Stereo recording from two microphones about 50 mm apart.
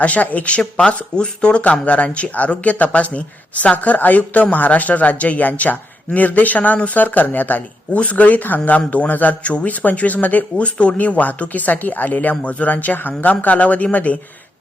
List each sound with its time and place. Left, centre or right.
0.0 s speech: left
0.6 s speech: centre